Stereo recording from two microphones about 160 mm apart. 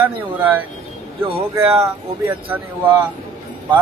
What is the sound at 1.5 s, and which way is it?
Speech, 15° right (ahead or behind).